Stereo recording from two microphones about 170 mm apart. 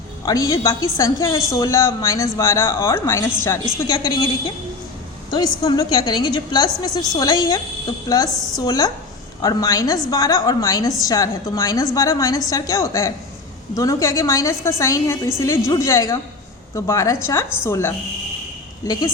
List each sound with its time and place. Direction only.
0.3 s a woman's voice: 20° left (ahead or behind)